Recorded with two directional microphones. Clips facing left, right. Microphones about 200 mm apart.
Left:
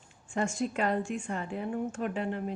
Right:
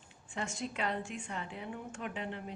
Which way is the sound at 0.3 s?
50° left (ahead or behind).